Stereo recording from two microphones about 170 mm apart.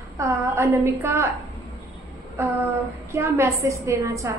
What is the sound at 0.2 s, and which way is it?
A woman's voice, 15° right (ahead or behind).